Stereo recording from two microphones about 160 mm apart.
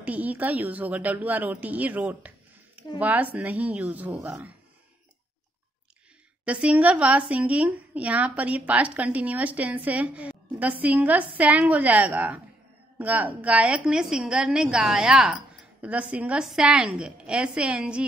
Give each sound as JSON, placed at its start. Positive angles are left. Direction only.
{"t": 0.0, "sound": "a woman's voice", "side_deg": -10}
{"t": 6.4, "sound": "a woman's voice", "side_deg": -10}